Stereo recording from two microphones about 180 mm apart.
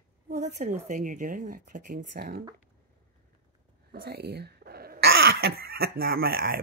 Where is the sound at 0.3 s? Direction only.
40° right (ahead or behind).